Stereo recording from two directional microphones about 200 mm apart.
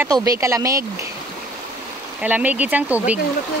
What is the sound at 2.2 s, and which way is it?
Speech, 5° right (ahead or behind).